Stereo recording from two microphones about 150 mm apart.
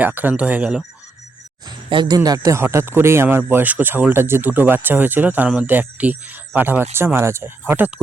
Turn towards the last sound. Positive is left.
turn(degrees=-15)  # may be behind; listen again after turning